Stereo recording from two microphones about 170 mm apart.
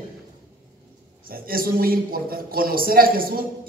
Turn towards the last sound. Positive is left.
turn(degrees=-60)  # may be behind; listen again after turning